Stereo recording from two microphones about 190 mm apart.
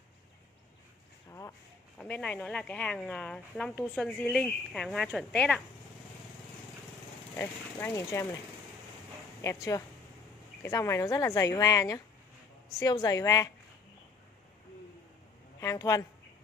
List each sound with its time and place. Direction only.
2.0 s speech: 5° left (ahead or behind)
7.3 s speech: 15° left (ahead or behind)
9.4 s speech: 15° left (ahead or behind)
15.6 s speech: 15° left (ahead or behind)